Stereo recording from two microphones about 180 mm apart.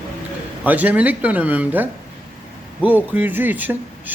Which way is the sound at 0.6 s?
10° right (ahead or behind).